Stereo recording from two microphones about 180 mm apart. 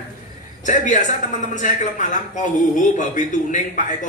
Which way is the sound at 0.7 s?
45° left (ahead or behind).